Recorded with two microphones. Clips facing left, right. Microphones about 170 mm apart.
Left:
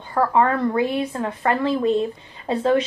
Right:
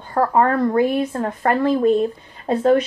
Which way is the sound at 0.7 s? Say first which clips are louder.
Right 4 dB; 45° right (ahead or behind).